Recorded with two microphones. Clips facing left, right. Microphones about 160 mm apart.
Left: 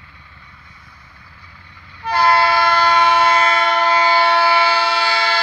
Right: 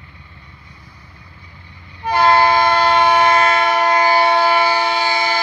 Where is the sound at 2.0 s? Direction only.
25° right (ahead or behind).